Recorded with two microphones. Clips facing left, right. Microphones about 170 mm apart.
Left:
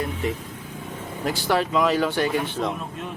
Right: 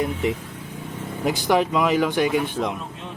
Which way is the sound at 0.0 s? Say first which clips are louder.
Right 3 dB; 20° right (ahead or behind).